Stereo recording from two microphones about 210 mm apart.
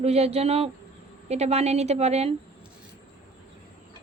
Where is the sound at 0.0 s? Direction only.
30° right (ahead or behind).